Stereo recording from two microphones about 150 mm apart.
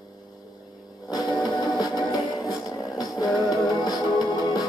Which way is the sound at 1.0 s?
25° left (ahead or behind).